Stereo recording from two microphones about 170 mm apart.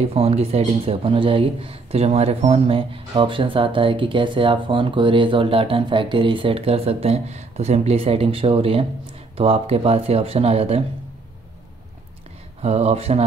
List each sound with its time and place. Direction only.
0.0 s speech: 35° right (ahead or behind)
12.6 s speech: 40° right (ahead or behind)